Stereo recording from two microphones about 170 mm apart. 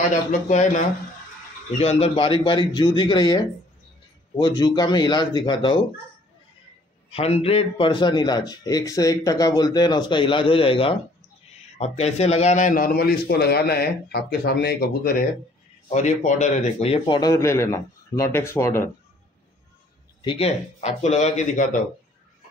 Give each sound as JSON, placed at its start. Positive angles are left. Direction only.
{"t": 0.1, "sound": "a man's voice", "side_deg": 45}
{"t": 7.1, "sound": "a man's voice", "side_deg": 35}
{"t": 15.9, "sound": "a man's voice", "side_deg": 45}
{"t": 20.2, "sound": "speech", "side_deg": 35}